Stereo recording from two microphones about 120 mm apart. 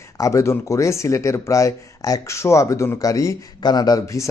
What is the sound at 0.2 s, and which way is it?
Speech, 25° left (ahead or behind).